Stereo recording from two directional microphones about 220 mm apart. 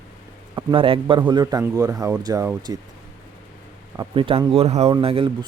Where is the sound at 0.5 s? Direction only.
25° right (ahead or behind).